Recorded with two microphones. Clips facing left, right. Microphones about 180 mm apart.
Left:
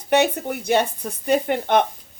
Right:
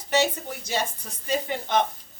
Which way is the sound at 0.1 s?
60° left (ahead or behind).